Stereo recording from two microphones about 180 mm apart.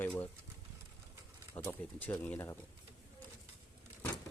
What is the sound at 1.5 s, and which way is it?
Speech, 10° left (ahead or behind).